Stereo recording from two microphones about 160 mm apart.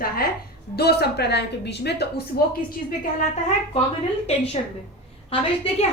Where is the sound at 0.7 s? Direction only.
85° left.